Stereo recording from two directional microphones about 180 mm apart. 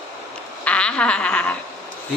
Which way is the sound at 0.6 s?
5° left (ahead or behind).